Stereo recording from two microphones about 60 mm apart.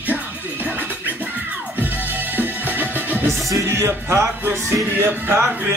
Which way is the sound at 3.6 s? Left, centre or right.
Right.